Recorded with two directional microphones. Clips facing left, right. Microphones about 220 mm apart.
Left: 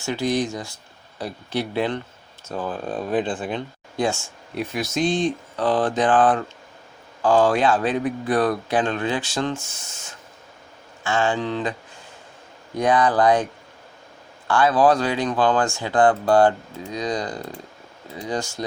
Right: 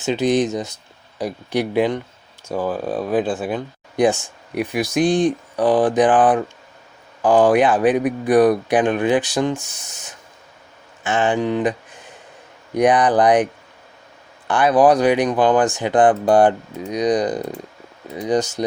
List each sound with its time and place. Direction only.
0.0 s speech: 20° right (ahead or behind)